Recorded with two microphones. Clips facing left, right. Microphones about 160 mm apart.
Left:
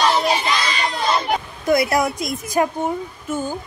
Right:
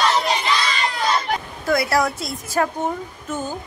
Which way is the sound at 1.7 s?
20° left (ahead or behind).